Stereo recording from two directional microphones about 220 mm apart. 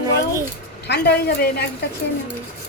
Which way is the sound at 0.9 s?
45° left (ahead or behind).